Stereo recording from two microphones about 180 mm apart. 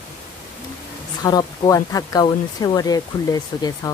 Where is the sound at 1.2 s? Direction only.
20° left (ahead or behind).